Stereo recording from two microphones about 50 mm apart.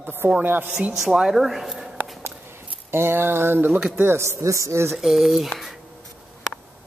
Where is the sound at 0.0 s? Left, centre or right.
Right.